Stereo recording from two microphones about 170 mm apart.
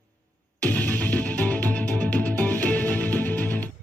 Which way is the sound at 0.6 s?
10° left (ahead or behind).